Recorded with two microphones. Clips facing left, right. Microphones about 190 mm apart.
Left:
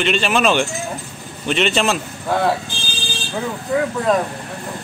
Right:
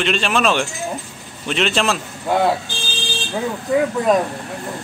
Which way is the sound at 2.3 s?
15° right (ahead or behind).